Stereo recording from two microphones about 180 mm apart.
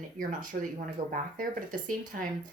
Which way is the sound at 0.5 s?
55° right (ahead or behind).